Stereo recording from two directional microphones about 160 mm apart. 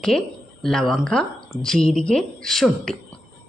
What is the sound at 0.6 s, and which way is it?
Speech, centre (ahead or behind).